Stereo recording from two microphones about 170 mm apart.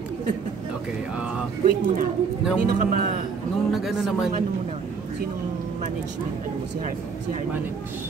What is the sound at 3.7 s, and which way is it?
Speech, centre (ahead or behind).